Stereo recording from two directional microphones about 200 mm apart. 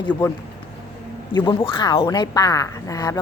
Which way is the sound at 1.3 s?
25° left (ahead or behind).